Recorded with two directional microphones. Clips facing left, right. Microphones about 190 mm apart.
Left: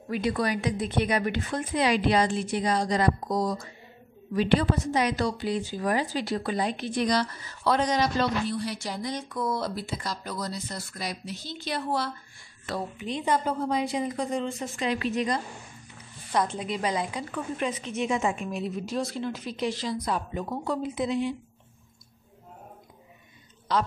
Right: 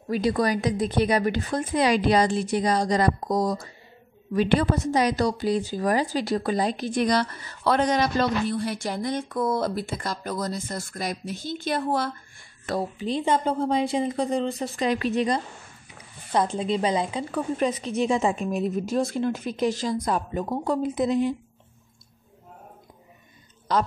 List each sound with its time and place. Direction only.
0.1 s speech: 40° right (ahead or behind)
7.0 s a woman's voice: 55° right (ahead or behind)
12.9 s speech: 30° right (ahead or behind)
15.1 s a woman's voice: 30° right (ahead or behind)
23.7 s a woman's voice: 45° right (ahead or behind)